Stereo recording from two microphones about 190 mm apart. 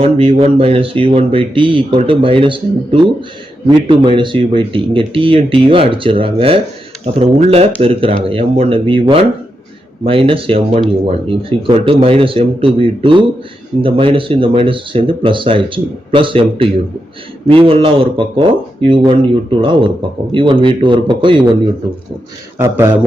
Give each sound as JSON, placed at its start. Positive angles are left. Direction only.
{"t": 0.0, "sound": "speech", "side_deg": -30}
{"t": 22.5, "sound": "speech", "side_deg": -15}